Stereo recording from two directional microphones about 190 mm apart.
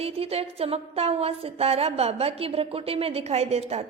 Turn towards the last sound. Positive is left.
turn(degrees=-35)  # may be behind; listen again after turning